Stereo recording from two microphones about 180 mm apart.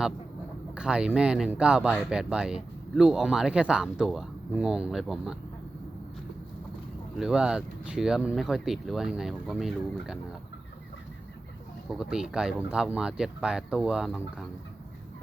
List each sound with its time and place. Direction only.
0.8 s speech: 5° right (ahead or behind)
7.2 s speech: 5° right (ahead or behind)
11.9 s speech: 5° right (ahead or behind)